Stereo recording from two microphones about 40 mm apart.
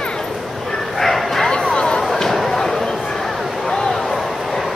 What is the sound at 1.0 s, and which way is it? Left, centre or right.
Bow-wow, centre.